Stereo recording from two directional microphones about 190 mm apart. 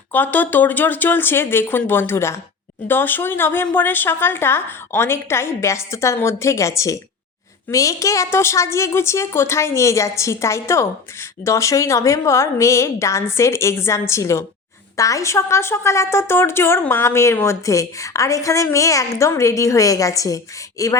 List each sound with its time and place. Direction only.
0.1 s a woman's voice: 10° left (ahead or behind)